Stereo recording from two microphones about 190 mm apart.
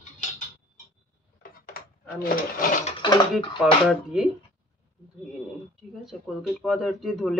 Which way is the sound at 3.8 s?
5° right (ahead or behind).